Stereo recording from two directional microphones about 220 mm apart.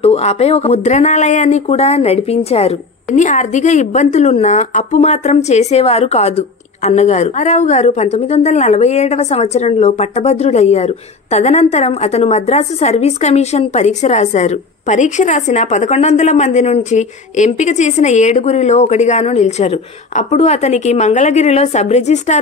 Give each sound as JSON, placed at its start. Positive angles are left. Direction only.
{"t": 0.0, "sound": "speech", "side_deg": 30}